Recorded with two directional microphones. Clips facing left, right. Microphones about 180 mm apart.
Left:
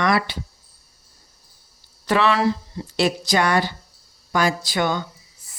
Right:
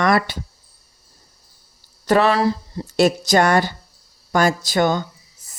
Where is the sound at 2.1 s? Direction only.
40° right (ahead or behind).